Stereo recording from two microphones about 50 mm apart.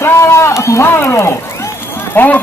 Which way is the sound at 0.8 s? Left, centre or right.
Left.